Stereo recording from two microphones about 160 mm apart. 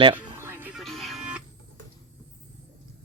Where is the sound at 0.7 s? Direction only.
Centre (ahead or behind).